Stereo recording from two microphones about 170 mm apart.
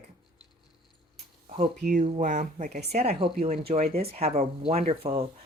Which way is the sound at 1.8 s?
45° right (ahead or behind).